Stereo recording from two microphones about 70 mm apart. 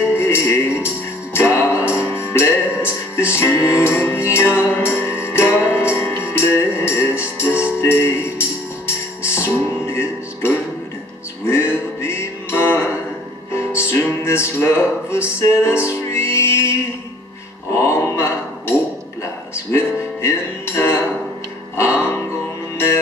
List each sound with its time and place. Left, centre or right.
0.2 s music: left
17.7 s a sound: left
19.7 s music: left